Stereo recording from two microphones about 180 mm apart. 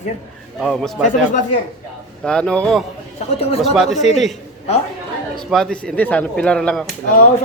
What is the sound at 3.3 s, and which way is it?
Speech, 35° left (ahead or behind).